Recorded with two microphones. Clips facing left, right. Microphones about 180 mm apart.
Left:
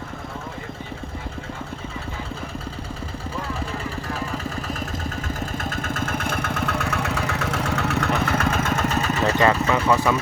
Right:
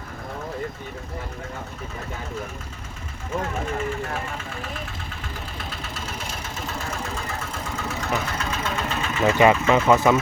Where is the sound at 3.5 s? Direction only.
35° left (ahead or behind).